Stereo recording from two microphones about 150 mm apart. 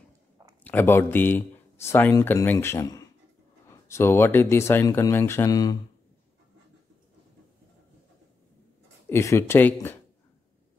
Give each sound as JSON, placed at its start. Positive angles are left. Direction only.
{"t": 0.7, "sound": "speech", "side_deg": 15}
{"t": 9.1, "sound": "speech", "side_deg": 20}